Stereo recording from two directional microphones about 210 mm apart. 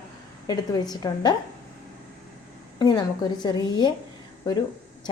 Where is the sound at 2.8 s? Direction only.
20° left (ahead or behind).